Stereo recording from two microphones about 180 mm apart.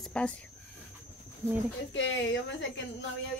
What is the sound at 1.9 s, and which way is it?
Speech, 85° left.